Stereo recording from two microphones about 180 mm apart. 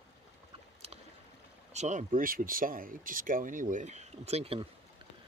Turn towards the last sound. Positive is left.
turn(degrees=-35)  # may be behind; listen again after turning